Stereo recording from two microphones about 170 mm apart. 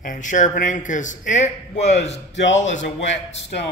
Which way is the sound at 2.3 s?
90° left.